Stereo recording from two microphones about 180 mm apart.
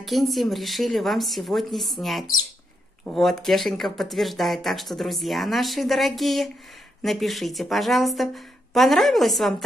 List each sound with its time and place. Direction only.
0.0 s speech: centre (ahead or behind)